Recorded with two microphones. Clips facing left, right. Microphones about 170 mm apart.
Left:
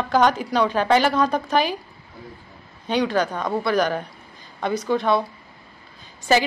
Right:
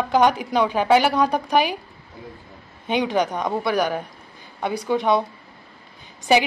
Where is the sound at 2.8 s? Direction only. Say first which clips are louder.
Even; 20° right (ahead or behind).